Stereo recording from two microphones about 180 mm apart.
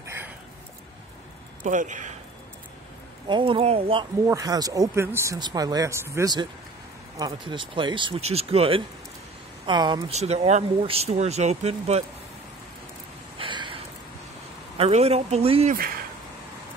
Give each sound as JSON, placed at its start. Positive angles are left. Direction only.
{"t": 1.6, "sound": "speech", "side_deg": -45}
{"t": 3.3, "sound": "speech", "side_deg": -30}
{"t": 4.3, "sound": "speech", "side_deg": -20}
{"t": 10.1, "sound": "speech", "side_deg": -35}
{"t": 13.4, "sound": "a sound", "side_deg": -25}
{"t": 14.8, "sound": "speech", "side_deg": -35}
{"t": 15.7, "sound": "speech", "side_deg": -55}